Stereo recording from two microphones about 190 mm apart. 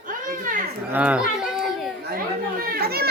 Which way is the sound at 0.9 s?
5° right (ahead or behind).